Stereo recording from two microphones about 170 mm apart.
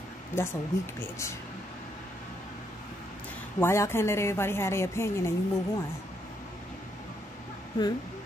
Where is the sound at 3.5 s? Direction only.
15° left (ahead or behind).